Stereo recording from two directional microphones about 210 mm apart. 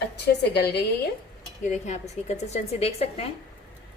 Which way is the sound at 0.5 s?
55° left (ahead or behind).